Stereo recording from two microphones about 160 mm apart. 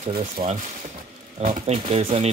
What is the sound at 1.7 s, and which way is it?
Speech, 40° right (ahead or behind).